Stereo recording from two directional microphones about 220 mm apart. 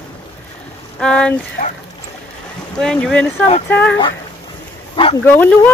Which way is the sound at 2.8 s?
5° left (ahead or behind).